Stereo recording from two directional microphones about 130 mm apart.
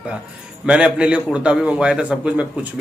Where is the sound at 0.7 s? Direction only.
10° right (ahead or behind).